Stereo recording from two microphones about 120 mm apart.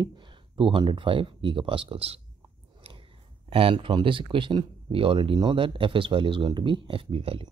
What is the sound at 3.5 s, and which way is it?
Speech, 45° right (ahead or behind).